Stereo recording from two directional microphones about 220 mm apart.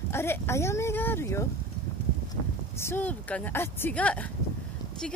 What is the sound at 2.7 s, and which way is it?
Speech, 10° left (ahead or behind).